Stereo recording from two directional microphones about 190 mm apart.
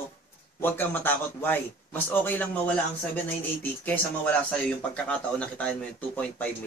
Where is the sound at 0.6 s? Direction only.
10° left (ahead or behind).